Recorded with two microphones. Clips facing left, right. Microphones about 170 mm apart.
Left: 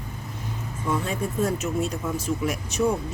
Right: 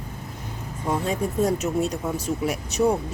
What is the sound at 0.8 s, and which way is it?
Speech, 40° right (ahead or behind).